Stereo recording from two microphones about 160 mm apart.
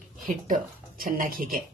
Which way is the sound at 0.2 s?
55° right (ahead or behind).